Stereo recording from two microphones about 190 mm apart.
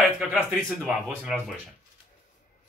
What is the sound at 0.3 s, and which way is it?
Speech, centre (ahead or behind).